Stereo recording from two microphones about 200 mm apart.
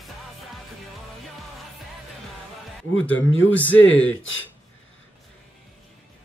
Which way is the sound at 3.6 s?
70° left (ahead or behind).